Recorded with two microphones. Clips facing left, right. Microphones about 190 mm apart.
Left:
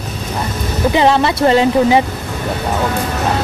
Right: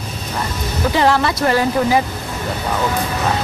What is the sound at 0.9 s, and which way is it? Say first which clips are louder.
A woman's voice: left 3 dB; 20° left (ahead or behind).